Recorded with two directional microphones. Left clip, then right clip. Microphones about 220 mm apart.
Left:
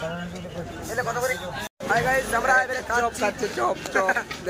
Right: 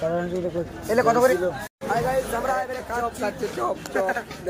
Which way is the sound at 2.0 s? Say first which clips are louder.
Left 1 dB; 5° left (ahead or behind).